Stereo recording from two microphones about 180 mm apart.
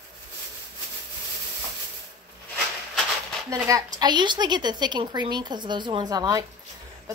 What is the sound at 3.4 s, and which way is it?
A woman's voice, 15° right (ahead or behind).